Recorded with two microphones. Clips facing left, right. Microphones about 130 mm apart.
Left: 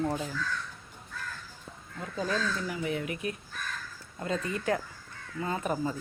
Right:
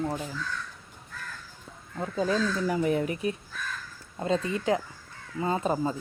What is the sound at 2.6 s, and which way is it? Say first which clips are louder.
Speech: right 7 dB; 40° right (ahead or behind).